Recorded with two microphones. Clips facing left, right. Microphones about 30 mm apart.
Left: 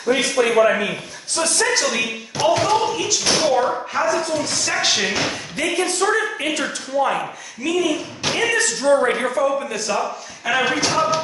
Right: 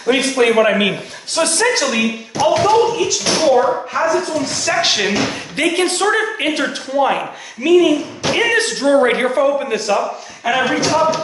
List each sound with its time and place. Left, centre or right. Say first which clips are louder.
0.0 s a man's voice: right 4 dB; right
1.6 s speech: right 2 dB; right
2.4 s speech: right 4 dB; centre
4.8 s speech: right 3 dB; right
5.6 s a woman's voice: right 4 dB; right
6.6 s speech: right 4 dB; right
8.4 s a man's voice: right 4 dB; right
9.9 s a man's voice: right 4 dB; centre